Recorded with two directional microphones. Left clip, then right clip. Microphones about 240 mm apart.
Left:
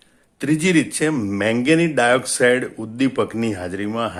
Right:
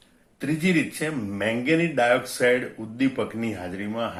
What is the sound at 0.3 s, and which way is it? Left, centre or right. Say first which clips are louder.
Speech: left 6 dB; left.